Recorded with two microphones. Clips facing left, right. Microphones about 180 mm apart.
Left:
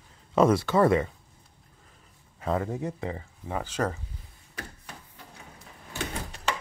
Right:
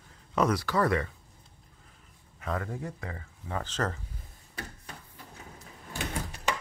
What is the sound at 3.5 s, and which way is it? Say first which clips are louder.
Speech: left 3 dB; 10° left (ahead or behind).